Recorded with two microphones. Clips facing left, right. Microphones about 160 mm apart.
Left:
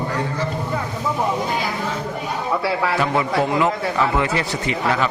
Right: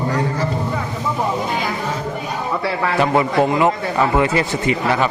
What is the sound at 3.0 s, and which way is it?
Speech, 30° right (ahead or behind).